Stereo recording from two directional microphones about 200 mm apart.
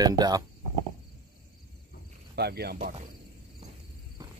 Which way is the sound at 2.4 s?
55° right (ahead or behind).